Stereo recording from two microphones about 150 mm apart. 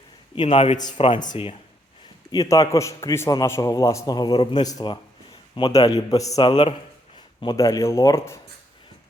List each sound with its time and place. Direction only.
0.4 s a man's voice: 45° left (ahead or behind)
0.8 s a man's voice: 25° left (ahead or behind)
2.3 s a man's voice: 25° left (ahead or behind)
7.4 s a man's voice: 20° left (ahead or behind)